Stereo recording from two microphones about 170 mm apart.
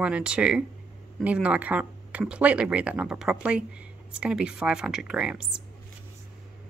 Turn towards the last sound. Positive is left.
turn(degrees=-5)  # may be behind; listen again after turning